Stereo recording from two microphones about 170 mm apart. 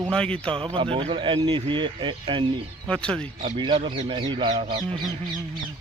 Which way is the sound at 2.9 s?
5° left (ahead or behind).